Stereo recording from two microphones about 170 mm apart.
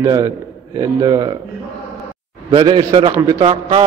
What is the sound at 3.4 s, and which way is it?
Speech, 35° right (ahead or behind).